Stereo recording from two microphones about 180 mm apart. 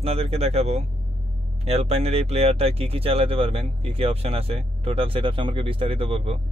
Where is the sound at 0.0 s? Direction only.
35° right (ahead or behind).